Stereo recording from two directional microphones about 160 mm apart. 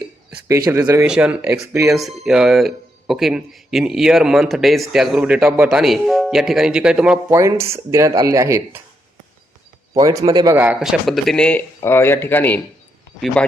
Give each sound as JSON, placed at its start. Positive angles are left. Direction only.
{"t": 0.4, "sound": "a man's voice", "side_deg": -20}
{"t": 1.0, "sound": "a man's voice", "side_deg": -5}
{"t": 1.6, "sound": "speech", "side_deg": -20}
{"t": 2.0, "sound": "speech", "side_deg": 0}
{"t": 5.8, "sound": "speech", "side_deg": 0}
{"t": 7.3, "sound": "speech", "side_deg": -15}
{"t": 9.9, "sound": "a man's voice", "side_deg": -20}